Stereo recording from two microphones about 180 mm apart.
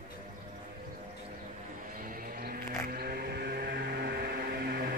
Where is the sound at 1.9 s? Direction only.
50° right (ahead or behind).